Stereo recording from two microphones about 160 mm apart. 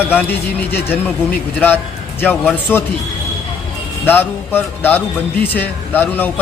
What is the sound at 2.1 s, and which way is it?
Speech, 10° left (ahead or behind).